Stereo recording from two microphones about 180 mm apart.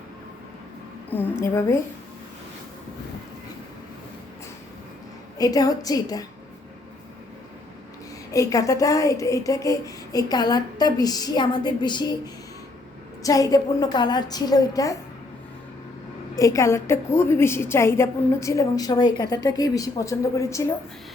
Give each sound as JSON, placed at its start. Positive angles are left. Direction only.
{"t": 1.1, "sound": "a woman's voice", "side_deg": 10}
{"t": 5.4, "sound": "speech", "side_deg": 20}
{"t": 8.3, "sound": "speech", "side_deg": 20}
{"t": 16.4, "sound": "a woman's voice", "side_deg": 15}